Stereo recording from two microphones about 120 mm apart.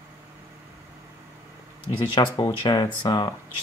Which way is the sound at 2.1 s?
35° left (ahead or behind).